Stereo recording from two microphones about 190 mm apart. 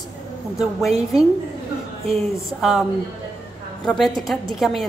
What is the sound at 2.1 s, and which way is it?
Speech, centre (ahead or behind).